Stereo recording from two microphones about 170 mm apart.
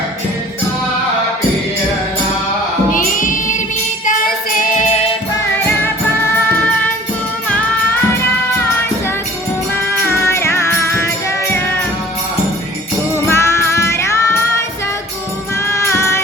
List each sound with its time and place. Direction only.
2.9 s music: 50° left (ahead or behind)
4.0 s child singing: 50° left (ahead or behind)
9.7 s music: 15° left (ahead or behind)
13.2 s music: 15° left (ahead or behind)
15.6 s music: 15° left (ahead or behind)